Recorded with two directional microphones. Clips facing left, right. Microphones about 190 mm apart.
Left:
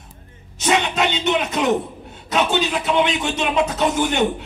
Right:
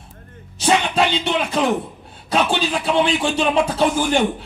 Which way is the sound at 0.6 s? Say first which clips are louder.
Right 2 dB; 30° right (ahead or behind).